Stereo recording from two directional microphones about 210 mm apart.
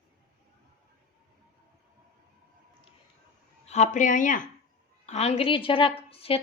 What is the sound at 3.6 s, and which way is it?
A woman's voice, 35° left (ahead or behind).